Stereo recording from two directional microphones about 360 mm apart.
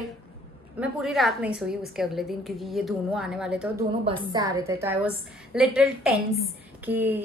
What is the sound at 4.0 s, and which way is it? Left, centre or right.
A woman's voice, centre.